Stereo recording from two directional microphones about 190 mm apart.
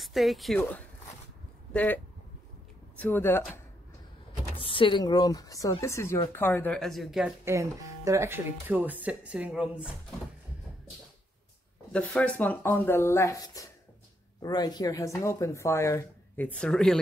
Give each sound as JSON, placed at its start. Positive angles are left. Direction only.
{"t": 0.0, "sound": "speech", "side_deg": 0}
{"t": 3.0, "sound": "speech", "side_deg": 10}
{"t": 4.6, "sound": "speech", "side_deg": 25}
{"t": 7.4, "sound": "speech", "side_deg": -15}
{"t": 11.9, "sound": "speech", "side_deg": 5}